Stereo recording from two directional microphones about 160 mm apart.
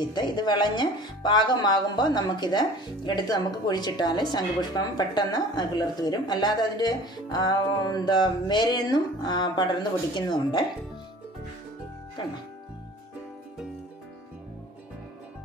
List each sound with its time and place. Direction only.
0.0 s speech: 25° left (ahead or behind)